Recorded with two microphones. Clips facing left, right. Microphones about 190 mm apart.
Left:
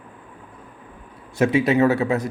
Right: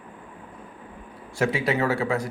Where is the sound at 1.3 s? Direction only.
20° left (ahead or behind).